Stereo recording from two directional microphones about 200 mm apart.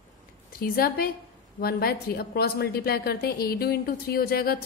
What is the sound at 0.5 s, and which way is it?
A woman's voice, 45° left (ahead or behind).